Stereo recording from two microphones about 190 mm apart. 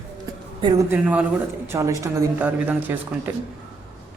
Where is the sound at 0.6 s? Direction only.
20° right (ahead or behind).